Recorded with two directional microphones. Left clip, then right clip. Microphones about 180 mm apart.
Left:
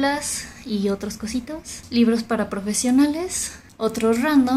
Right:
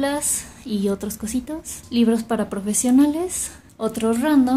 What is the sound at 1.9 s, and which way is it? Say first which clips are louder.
A woman's voice: even; 25° right (ahead or behind).